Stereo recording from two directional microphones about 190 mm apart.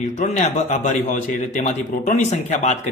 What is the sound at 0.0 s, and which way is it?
A man's voice, 40° left (ahead or behind).